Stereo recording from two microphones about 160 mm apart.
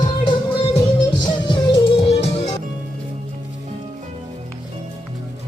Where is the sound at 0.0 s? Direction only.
30° left (ahead or behind).